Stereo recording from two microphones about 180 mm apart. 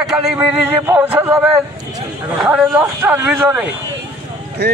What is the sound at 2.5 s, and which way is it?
Speech, 10° right (ahead or behind).